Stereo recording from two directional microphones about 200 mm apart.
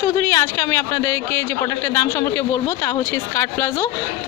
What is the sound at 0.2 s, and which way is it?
Speech, 15° left (ahead or behind).